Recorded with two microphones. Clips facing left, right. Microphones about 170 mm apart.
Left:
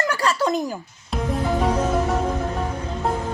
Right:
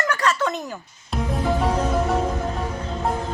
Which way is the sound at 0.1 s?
30° left (ahead or behind).